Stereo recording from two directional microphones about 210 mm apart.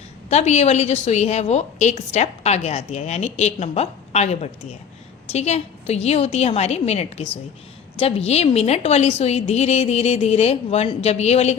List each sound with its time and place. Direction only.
0.3 s a woman's voice: 30° left (ahead or behind)